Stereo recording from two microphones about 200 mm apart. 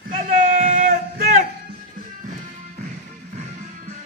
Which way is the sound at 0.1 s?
35° right (ahead or behind).